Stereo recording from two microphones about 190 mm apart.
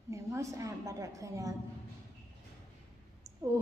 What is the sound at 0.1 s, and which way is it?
A woman's voice, 15° right (ahead or behind).